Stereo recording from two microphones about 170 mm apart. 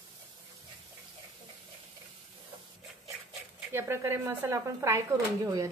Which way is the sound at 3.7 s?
15° right (ahead or behind).